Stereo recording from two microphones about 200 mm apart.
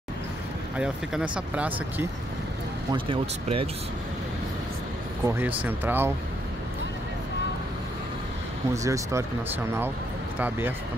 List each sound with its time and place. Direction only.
0.7 s speech: 5° right (ahead or behind)
2.9 s speech: 25° right (ahead or behind)
5.2 s speech: 15° right (ahead or behind)
8.7 s speech: 15° right (ahead or behind)